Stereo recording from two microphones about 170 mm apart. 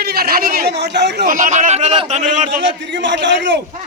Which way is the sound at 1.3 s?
45° right (ahead or behind).